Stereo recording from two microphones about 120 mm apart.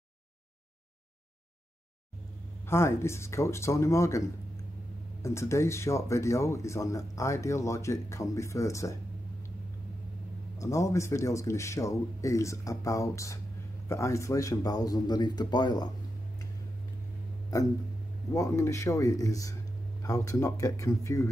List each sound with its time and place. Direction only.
2.6 s speech: 20° left (ahead or behind)
5.2 s speech: 25° left (ahead or behind)
10.6 s speech: 25° left (ahead or behind)
17.5 s speech: 30° left (ahead or behind)